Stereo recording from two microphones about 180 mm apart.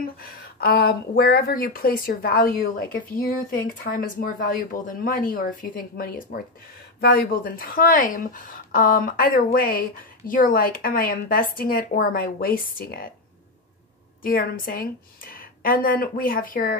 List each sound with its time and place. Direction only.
0.0 s a woman's voice: 55° left (ahead or behind)
14.2 s a woman's voice: 55° left (ahead or behind)